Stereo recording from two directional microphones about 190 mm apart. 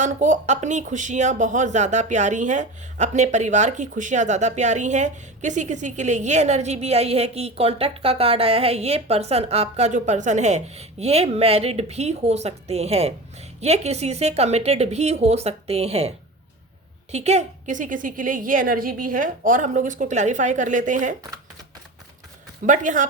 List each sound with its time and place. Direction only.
0.0 s a woman's voice: 40° right (ahead or behind)
22.6 s speech: 40° right (ahead or behind)